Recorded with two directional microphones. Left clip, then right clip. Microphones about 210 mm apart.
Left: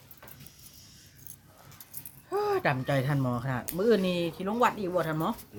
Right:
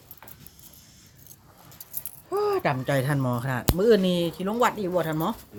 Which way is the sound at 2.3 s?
15° right (ahead or behind).